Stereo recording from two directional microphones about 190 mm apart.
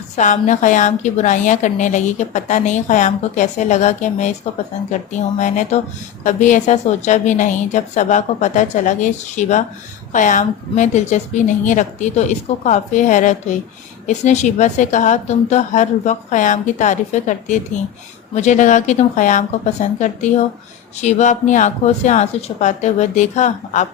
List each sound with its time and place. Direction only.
0.2 s a woman's voice: 40° left (ahead or behind)